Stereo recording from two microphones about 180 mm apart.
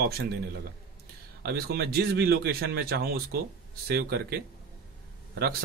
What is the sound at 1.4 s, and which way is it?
Speech, 60° right (ahead or behind).